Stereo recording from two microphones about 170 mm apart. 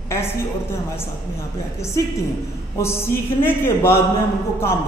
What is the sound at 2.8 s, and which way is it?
A man's voice, 15° left (ahead or behind).